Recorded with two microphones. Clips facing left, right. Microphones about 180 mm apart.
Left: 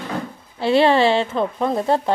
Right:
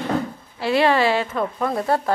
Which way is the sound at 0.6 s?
30° left (ahead or behind).